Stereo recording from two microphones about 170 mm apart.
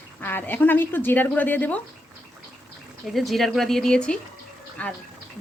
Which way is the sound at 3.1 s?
Centre (ahead or behind).